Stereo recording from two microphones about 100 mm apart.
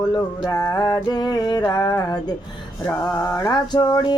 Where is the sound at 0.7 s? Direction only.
45° left (ahead or behind).